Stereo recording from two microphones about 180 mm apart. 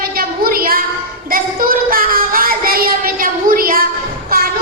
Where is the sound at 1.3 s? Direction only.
50° right (ahead or behind).